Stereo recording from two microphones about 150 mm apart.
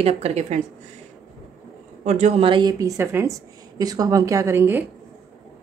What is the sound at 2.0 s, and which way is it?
Speech, 50° right (ahead or behind).